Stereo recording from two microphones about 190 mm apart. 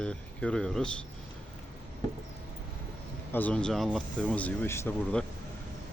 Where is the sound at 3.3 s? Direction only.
10° left (ahead or behind).